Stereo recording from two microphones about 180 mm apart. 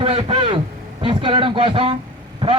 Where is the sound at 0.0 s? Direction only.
30° right (ahead or behind).